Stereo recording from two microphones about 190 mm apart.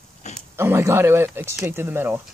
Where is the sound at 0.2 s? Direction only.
35° left (ahead or behind).